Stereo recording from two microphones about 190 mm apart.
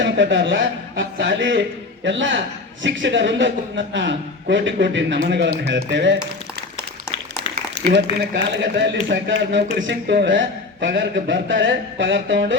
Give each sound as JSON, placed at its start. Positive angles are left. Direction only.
{"t": 0.0, "sound": "a man's voice", "side_deg": -75}
{"t": 8.4, "sound": "a man's voice", "side_deg": -65}